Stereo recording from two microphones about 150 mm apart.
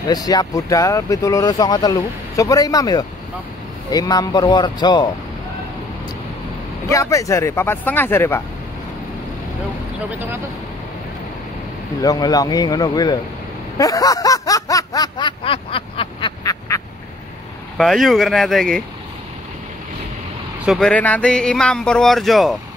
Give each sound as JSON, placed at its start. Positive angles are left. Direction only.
{"t": 0.1, "sound": "speech", "side_deg": 25}
{"t": 6.9, "sound": "speech", "side_deg": 20}
{"t": 10.1, "sound": "speech", "side_deg": -15}
{"t": 12.0, "sound": "speech", "side_deg": 25}
{"t": 13.7, "sound": "snicker", "side_deg": 25}
{"t": 16.4, "sound": "quack", "side_deg": 20}
{"t": 17.7, "sound": "speech", "side_deg": 0}
{"t": 20.6, "sound": "speech", "side_deg": 0}